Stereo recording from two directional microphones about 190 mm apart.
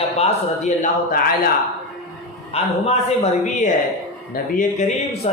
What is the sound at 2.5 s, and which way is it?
Speech, 35° left (ahead or behind).